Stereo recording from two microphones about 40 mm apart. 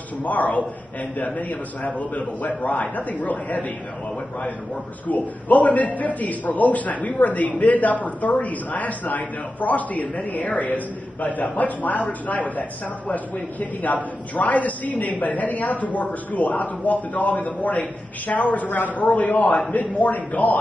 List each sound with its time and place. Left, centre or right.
0.2 s a man's voice: left
5.0 s a man's voice: left